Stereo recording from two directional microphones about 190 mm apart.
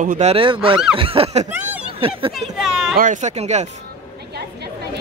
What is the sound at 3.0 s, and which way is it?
Speech, 40° right (ahead or behind).